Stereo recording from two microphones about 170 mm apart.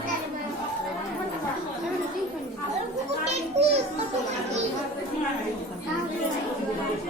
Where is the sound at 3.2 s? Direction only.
35° right (ahead or behind).